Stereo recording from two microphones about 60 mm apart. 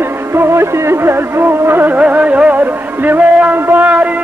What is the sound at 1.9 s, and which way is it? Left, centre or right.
Music, right.